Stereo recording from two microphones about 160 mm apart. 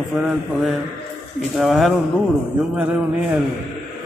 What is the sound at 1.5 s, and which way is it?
Speech, centre (ahead or behind).